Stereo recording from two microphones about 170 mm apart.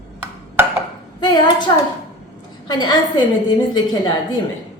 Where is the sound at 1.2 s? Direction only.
25° left (ahead or behind).